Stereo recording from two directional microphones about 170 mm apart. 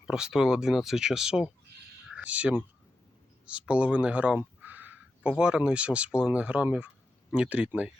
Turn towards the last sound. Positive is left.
turn(degrees=-10)  # may be behind; listen again after turning